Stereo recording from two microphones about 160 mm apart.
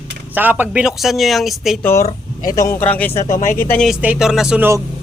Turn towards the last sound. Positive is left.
turn(degrees=-5)  # may be behind; listen again after turning